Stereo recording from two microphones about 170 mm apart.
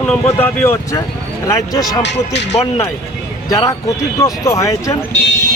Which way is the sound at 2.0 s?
90° left.